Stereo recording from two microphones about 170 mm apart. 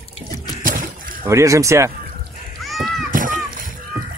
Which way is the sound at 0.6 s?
55° right (ahead or behind).